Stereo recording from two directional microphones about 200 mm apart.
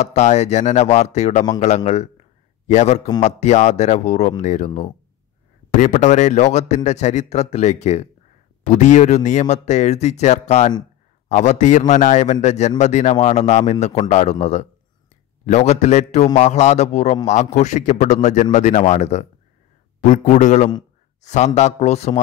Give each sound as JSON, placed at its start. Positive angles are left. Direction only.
{"t": 0.0, "sound": "a man's voice", "side_deg": 35}
{"t": 2.7, "sound": "a man's voice", "side_deg": 35}
{"t": 5.8, "sound": "a man's voice", "side_deg": 35}